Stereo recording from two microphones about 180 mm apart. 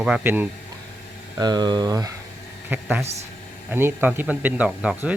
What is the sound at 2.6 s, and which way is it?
Speech, 10° right (ahead or behind).